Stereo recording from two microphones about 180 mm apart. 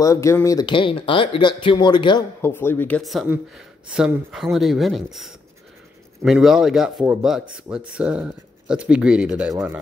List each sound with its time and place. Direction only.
0.0 s speech: 15° left (ahead or behind)
2.4 s speech: 10° left (ahead or behind)
3.0 s speech: centre (ahead or behind)